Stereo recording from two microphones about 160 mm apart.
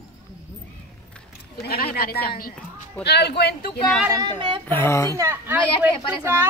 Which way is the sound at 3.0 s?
90° left.